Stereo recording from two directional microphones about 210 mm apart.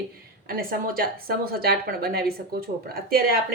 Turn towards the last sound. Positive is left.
turn(degrees=-45)  # may be behind; listen again after turning